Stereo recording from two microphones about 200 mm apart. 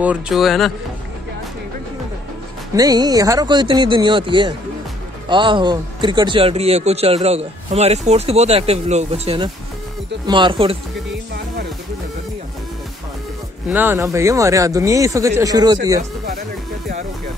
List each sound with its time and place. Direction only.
0.0 s speech: 5° right (ahead or behind)
2.7 s speech: 20° right (ahead or behind)
13.7 s speech: 10° right (ahead or behind)